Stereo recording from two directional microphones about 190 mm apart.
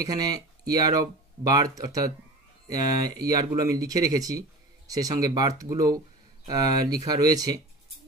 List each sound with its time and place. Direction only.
0.0 s speech: 20° right (ahead or behind)